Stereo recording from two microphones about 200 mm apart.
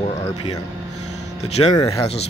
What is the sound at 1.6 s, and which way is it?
Speech, 20° left (ahead or behind).